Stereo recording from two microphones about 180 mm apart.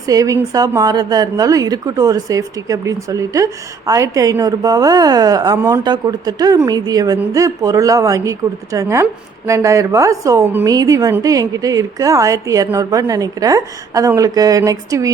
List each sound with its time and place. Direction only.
0.0 s a woman's voice: 20° right (ahead or behind)